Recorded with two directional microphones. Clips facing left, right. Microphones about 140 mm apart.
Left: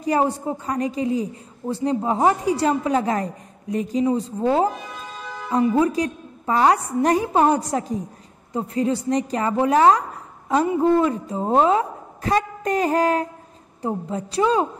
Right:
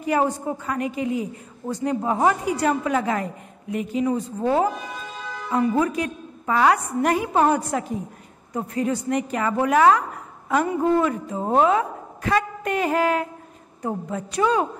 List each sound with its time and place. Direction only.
0.0 s a woman's voice: 35° left (ahead or behind)
5.6 s a woman's voice: 30° left (ahead or behind)